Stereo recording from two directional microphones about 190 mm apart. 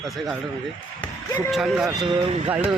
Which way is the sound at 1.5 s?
Centre (ahead or behind).